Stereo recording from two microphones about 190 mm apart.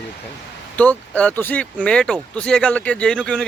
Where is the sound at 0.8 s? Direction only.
5° left (ahead or behind).